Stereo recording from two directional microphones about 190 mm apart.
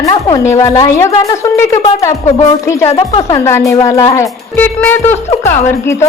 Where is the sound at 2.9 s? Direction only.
25° left (ahead or behind).